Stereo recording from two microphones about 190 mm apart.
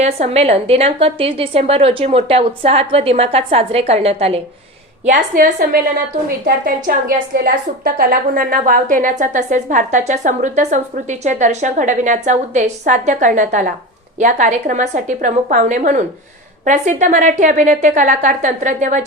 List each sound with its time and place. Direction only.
0.0 s a woman's voice: 35° right (ahead or behind)
5.0 s a woman's voice: 45° right (ahead or behind)